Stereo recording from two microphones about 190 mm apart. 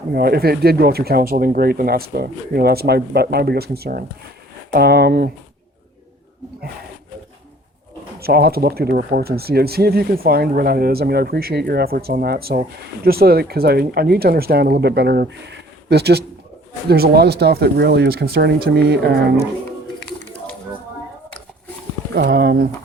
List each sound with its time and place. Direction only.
0.1 s speech: 55° right (ahead or behind)
8.2 s speech: 55° right (ahead or behind)
22.1 s speech: 60° right (ahead or behind)